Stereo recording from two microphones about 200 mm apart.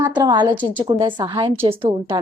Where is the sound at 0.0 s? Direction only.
20° right (ahead or behind).